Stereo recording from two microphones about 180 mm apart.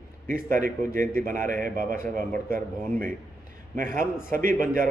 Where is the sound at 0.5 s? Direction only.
50° right (ahead or behind).